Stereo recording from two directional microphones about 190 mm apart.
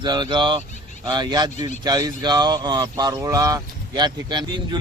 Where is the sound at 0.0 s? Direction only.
25° right (ahead or behind).